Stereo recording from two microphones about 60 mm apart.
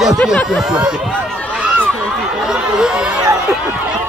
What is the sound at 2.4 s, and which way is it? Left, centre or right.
Chatter, centre.